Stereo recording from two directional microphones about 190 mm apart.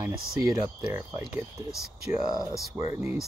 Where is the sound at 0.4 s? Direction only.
15° right (ahead or behind).